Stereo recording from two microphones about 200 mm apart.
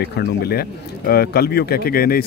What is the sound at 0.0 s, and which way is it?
Speech, 50° left (ahead or behind).